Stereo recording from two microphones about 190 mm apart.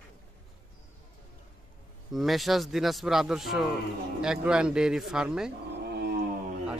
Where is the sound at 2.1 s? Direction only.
Centre (ahead or behind).